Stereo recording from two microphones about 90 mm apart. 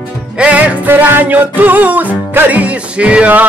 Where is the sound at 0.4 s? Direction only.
15° right (ahead or behind).